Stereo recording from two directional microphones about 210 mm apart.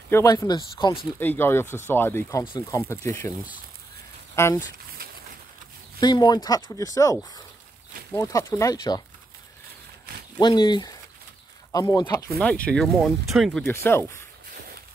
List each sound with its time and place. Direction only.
0.1 s speech: 15° left (ahead or behind)
1.2 s speech: 10° left (ahead or behind)
4.4 s speech: 10° left (ahead or behind)
5.9 s speech: 20° left (ahead or behind)
10.4 s speech: 20° left (ahead or behind)
12.4 s speech: 5° left (ahead or behind)
13.8 s speech: 10° left (ahead or behind)